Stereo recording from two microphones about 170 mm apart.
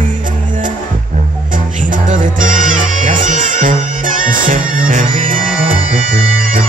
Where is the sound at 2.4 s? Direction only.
50° right (ahead or behind).